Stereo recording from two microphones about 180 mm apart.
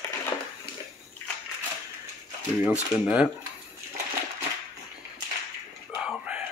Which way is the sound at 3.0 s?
5° right (ahead or behind).